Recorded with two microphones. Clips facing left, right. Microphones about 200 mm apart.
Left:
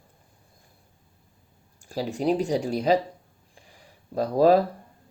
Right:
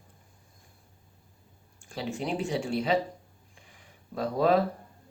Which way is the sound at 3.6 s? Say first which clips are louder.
Left 4 dB; 35° left (ahead or behind).